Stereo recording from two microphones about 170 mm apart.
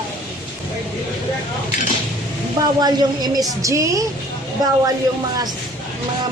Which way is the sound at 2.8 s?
25° right (ahead or behind).